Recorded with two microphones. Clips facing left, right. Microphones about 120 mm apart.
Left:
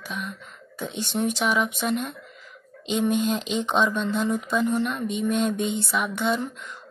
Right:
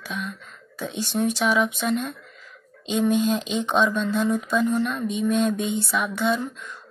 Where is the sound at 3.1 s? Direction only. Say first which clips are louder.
Right 2 dB; 55° left (ahead or behind).